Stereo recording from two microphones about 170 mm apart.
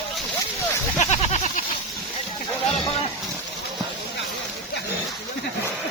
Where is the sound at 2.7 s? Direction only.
35° left (ahead or behind).